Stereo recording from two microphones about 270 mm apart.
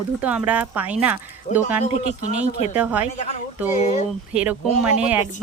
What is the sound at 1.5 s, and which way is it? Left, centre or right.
Speech, left.